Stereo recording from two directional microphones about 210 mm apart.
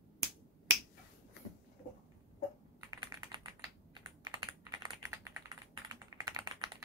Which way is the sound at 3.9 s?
20° right (ahead or behind).